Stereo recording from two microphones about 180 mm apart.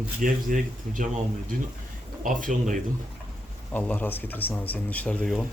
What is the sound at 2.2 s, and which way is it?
Speech, 45° right (ahead or behind).